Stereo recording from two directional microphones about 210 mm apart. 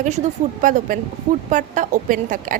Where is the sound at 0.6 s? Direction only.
40° right (ahead or behind).